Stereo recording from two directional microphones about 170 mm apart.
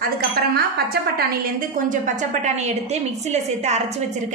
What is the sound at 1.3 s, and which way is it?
A woman's voice, 55° right (ahead or behind).